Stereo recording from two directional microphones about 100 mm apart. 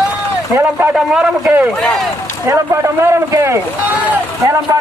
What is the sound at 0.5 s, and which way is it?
Speech, 25° right (ahead or behind).